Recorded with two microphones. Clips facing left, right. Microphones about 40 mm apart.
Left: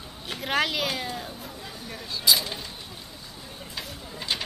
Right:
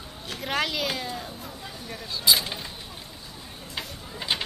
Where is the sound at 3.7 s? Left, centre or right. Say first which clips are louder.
Right 2 dB; right.